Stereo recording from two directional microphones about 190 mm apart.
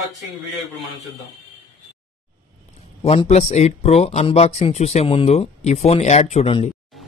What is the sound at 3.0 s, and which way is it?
Speech, 30° left (ahead or behind).